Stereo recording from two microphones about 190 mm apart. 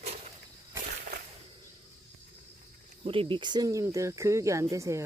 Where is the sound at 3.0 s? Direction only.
30° right (ahead or behind).